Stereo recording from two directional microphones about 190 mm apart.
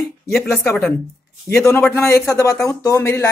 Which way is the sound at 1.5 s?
15° left (ahead or behind).